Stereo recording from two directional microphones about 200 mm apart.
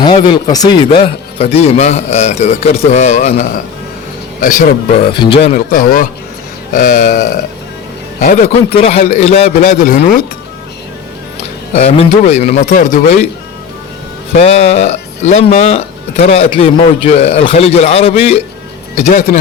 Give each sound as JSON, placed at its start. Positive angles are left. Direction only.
{"t": 0.0, "sound": "speech", "side_deg": 25}
{"t": 5.1, "sound": "speech", "side_deg": 25}
{"t": 5.5, "sound": "speech", "side_deg": 45}
{"t": 8.8, "sound": "speech", "side_deg": 30}
{"t": 11.7, "sound": "speech", "side_deg": 30}
{"t": 14.3, "sound": "speech", "side_deg": 30}